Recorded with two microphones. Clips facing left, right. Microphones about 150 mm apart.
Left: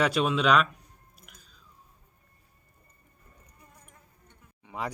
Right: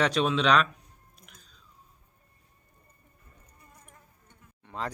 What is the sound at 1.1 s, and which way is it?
Chewing, 5° left (ahead or behind).